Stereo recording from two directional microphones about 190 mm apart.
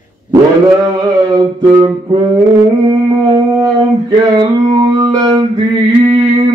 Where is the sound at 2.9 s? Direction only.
20° right (ahead or behind).